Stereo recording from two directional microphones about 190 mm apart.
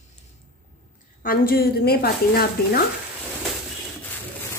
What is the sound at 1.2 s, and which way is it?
A woman's voice, 50° left (ahead or behind).